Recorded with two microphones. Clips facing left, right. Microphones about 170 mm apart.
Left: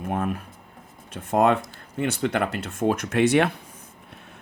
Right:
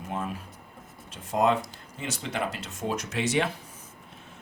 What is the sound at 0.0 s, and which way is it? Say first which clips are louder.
Speech: left 6 dB; 55° left (ahead or behind).